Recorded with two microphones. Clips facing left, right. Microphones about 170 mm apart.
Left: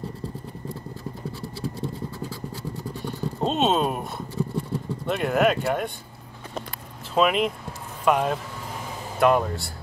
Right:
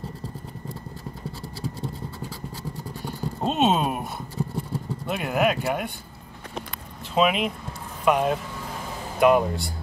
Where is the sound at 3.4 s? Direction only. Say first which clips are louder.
Even; 5° right (ahead or behind).